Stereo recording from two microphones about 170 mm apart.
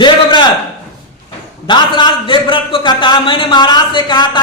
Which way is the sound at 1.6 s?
25° left (ahead or behind).